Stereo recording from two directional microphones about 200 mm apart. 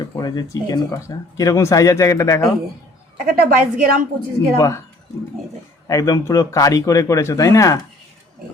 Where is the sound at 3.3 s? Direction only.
45° right (ahead or behind).